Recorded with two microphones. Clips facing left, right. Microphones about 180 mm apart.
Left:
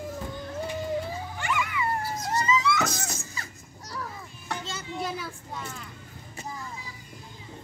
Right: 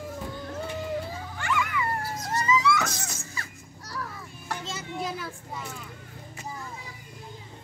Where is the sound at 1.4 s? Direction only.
15° left (ahead or behind).